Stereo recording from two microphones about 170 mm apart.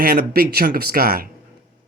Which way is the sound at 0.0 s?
60° right (ahead or behind).